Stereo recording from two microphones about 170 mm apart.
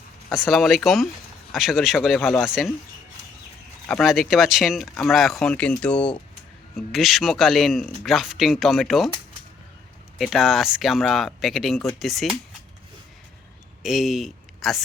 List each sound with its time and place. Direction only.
0.3 s speech: centre (ahead or behind)
3.8 s speech: centre (ahead or behind)
10.2 s speech: centre (ahead or behind)
13.8 s speech: centre (ahead or behind)